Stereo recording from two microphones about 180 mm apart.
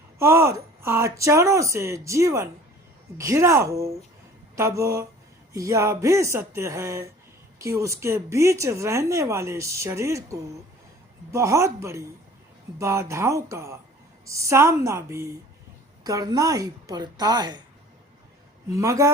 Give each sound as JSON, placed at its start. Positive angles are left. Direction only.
{"t": 0.2, "sound": "a woman's voice", "side_deg": -15}
{"t": 18.7, "sound": "speech", "side_deg": -15}